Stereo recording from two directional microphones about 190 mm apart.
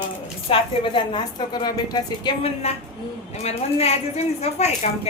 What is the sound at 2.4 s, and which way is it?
Speech, 35° left (ahead or behind).